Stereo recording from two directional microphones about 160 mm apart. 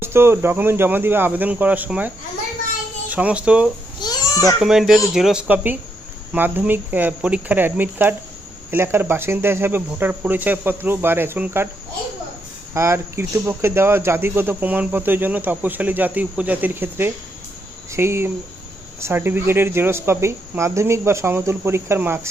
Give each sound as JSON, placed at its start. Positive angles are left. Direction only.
{"t": 0.0, "sound": "speech", "side_deg": -15}
{"t": 4.0, "sound": "a sound", "side_deg": 25}
{"t": 4.6, "sound": "speech", "side_deg": 0}
{"t": 12.7, "sound": "speech", "side_deg": -15}